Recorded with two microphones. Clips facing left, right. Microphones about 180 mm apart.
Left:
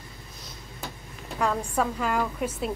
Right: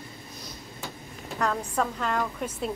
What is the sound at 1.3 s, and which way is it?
A woman's voice, 10° left (ahead or behind).